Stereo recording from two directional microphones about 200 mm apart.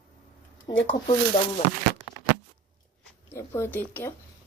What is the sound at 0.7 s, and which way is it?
Speech, 25° left (ahead or behind).